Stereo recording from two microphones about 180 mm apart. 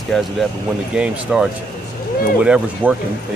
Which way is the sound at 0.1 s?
5° left (ahead or behind).